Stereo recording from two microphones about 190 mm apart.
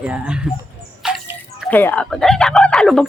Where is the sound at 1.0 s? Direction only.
5° right (ahead or behind).